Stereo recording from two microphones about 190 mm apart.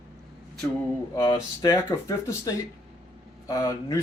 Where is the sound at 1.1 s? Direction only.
20° left (ahead or behind).